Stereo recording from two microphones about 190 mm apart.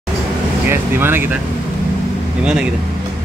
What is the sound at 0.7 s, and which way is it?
Speech, 10° right (ahead or behind).